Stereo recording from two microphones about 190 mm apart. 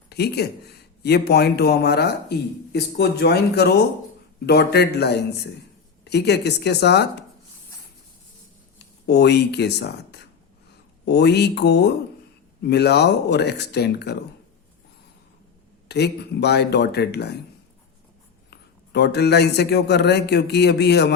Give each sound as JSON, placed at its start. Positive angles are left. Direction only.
{"t": 0.1, "sound": "speech", "side_deg": 60}
{"t": 9.0, "sound": "speech", "side_deg": 60}
{"t": 15.9, "sound": "speech", "side_deg": 60}
{"t": 18.5, "sound": "speech", "side_deg": 60}